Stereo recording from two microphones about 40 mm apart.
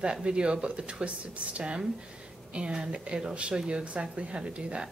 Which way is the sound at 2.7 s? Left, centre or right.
Centre.